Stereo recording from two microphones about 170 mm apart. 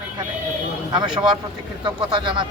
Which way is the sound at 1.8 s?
25° right (ahead or behind).